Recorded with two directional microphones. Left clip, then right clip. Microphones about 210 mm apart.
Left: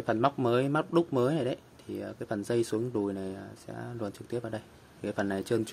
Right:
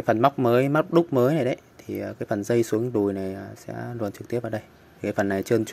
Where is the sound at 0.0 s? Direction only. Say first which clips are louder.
Right 7 dB; 20° right (ahead or behind).